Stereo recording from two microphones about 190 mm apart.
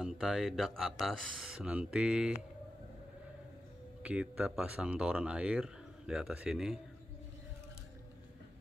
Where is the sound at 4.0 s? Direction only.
5° right (ahead or behind).